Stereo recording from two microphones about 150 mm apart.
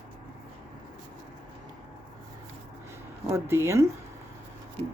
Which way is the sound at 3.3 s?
15° right (ahead or behind).